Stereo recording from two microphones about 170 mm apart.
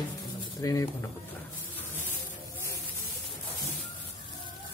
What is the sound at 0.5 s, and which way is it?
Speech, 20° left (ahead or behind).